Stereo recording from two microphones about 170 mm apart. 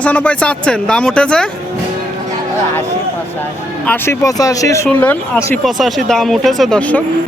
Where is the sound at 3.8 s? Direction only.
10° left (ahead or behind).